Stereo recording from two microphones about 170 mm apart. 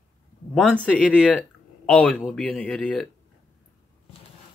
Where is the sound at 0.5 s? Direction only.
5° left (ahead or behind).